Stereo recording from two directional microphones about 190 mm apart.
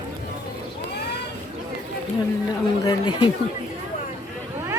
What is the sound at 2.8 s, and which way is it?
Speech, 20° left (ahead or behind).